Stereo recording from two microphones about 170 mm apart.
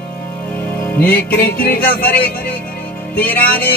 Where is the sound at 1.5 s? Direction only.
60° left (ahead or behind).